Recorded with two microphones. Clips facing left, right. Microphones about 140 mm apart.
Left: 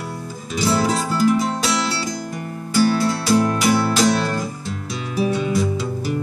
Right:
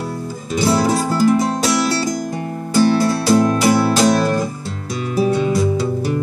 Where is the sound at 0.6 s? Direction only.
30° right (ahead or behind).